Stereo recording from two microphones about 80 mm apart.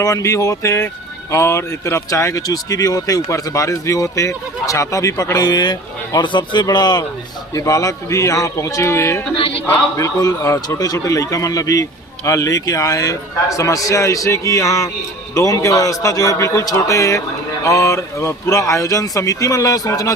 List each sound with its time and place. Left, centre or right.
0.0 s a man's voice: left
6.2 s speech: left
6.7 s a man's voice: left
7.5 s speech: left
10.0 s a man's voice: left